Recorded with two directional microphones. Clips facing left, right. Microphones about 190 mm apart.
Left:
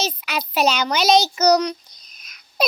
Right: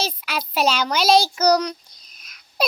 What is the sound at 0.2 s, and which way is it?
A child's voice, centre (ahead or behind).